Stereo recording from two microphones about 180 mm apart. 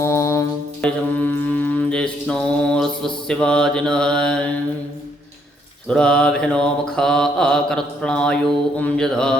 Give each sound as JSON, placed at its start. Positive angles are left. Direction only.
{"t": 0.0, "sound": "music", "side_deg": 15}
{"t": 0.8, "sound": "mantra", "side_deg": 5}
{"t": 5.9, "sound": "mantra", "side_deg": 5}